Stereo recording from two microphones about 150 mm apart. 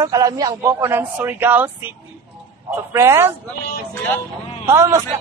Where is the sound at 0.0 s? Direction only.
25° right (ahead or behind).